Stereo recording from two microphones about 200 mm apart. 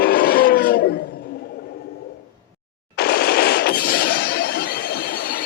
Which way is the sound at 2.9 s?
50° left (ahead or behind).